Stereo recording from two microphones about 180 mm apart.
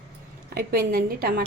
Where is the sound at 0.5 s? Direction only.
60° right (ahead or behind).